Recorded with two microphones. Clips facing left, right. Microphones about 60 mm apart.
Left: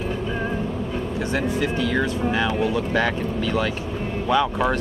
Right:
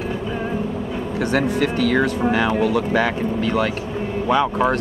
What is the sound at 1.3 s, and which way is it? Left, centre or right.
Speech, right.